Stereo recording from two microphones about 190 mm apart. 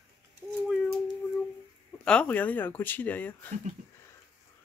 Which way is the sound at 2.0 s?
5° left (ahead or behind).